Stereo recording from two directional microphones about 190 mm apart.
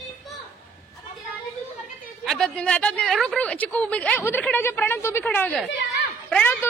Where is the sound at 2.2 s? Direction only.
Centre (ahead or behind).